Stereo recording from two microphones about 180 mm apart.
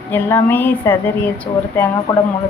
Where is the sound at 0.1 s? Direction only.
10° left (ahead or behind).